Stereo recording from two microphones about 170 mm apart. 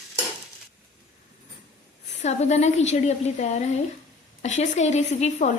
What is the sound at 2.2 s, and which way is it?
A woman's voice, 40° left (ahead or behind).